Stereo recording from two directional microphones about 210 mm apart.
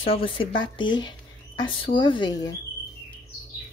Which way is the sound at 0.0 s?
25° left (ahead or behind).